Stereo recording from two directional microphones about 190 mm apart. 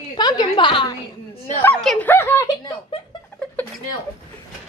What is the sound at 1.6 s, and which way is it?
Speech, 5° left (ahead or behind).